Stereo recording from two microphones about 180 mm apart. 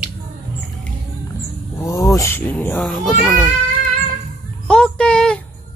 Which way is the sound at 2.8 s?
Centre (ahead or behind).